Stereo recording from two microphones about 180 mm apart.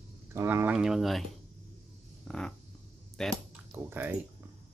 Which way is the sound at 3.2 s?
5° left (ahead or behind).